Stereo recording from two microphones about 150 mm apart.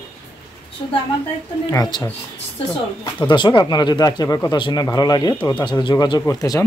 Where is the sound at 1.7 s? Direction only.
25° left (ahead or behind).